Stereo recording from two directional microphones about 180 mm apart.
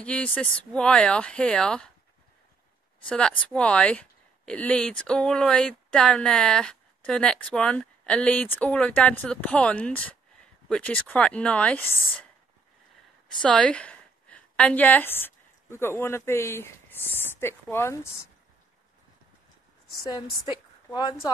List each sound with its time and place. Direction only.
0.0 s a woman's voice: 5° left (ahead or behind)
3.1 s a woman's voice: 5° left (ahead or behind)
13.4 s a woman's voice: 5° left (ahead or behind)
20.0 s a woman's voice: 20° left (ahead or behind)